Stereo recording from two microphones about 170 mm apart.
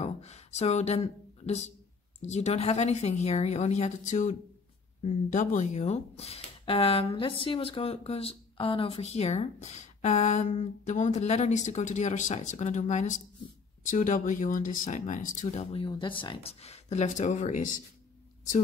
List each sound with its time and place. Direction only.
0.0 s a woman's voice: 40° left (ahead or behind)